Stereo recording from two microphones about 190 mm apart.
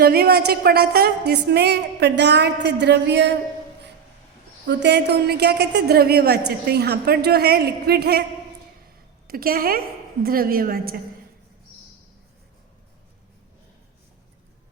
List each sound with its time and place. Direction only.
0.0 s a woman's voice: 55° right (ahead or behind)
4.6 s a woman's voice: 65° right (ahead or behind)
9.2 s a woman's voice: 50° right (ahead or behind)